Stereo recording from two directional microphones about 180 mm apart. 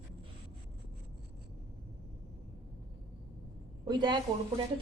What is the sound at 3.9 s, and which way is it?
Speech, 25° right (ahead or behind).